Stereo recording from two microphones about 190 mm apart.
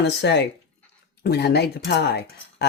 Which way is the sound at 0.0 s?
65° left (ahead or behind).